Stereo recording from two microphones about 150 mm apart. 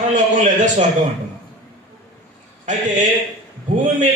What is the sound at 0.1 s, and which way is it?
Speech, 55° right (ahead or behind).